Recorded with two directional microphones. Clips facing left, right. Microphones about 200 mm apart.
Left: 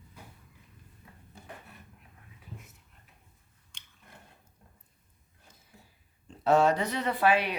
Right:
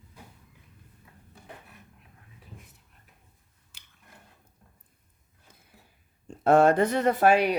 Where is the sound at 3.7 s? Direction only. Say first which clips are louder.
Left 1 dB; 5° right (ahead or behind).